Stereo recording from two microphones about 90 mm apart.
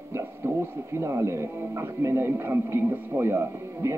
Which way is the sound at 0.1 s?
30° right (ahead or behind).